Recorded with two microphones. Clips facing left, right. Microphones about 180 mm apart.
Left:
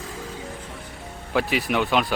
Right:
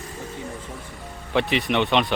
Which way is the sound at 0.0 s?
90° left.